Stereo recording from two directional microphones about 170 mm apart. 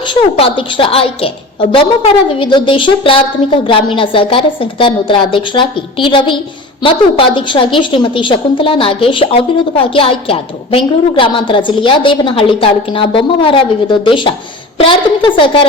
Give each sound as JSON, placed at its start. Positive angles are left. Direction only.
{"t": 0.0, "sound": "a woman's voice", "side_deg": 30}